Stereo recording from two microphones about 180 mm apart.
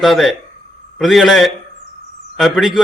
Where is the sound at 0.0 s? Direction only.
Centre (ahead or behind).